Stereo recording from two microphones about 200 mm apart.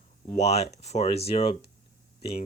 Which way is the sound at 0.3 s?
30° left (ahead or behind).